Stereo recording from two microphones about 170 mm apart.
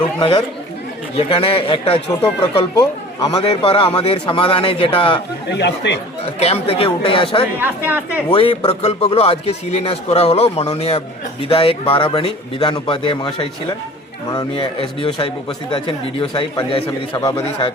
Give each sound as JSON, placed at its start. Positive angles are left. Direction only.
{"t": 0.2, "sound": "a man's voice", "side_deg": 25}
{"t": 3.2, "sound": "a man's voice", "side_deg": 30}
{"t": 5.5, "sound": "speech", "side_deg": 90}
{"t": 6.4, "sound": "a man's voice", "side_deg": 35}
{"t": 7.6, "sound": "speech", "side_deg": -10}
{"t": 8.3, "sound": "a man's voice", "side_deg": 30}
{"t": 17.2, "sound": "speech", "side_deg": 20}